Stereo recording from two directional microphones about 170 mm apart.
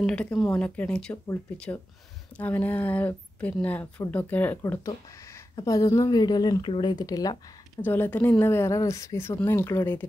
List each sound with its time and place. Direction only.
0.0 s speech: 5° left (ahead or behind)
2.3 s speech: 10° left (ahead or behind)
7.8 s speech: 10° left (ahead or behind)